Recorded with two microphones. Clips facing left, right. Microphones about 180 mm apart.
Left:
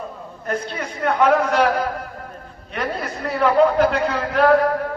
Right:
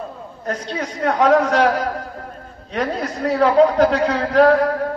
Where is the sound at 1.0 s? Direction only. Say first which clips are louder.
Right 2 dB; 40° right (ahead or behind).